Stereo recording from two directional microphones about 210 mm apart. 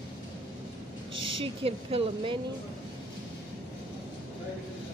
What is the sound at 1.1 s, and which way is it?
Speech, 25° right (ahead or behind).